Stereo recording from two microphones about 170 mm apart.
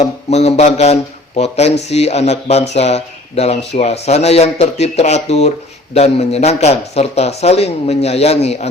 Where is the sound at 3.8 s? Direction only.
40° left (ahead or behind).